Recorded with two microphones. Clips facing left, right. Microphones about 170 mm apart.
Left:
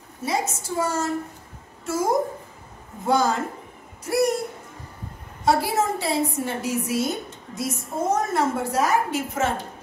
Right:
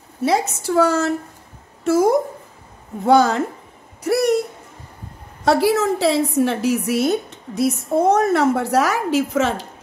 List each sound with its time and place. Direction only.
0.2 s a woman's voice: 75° right (ahead or behind)
5.4 s a woman's voice: 85° right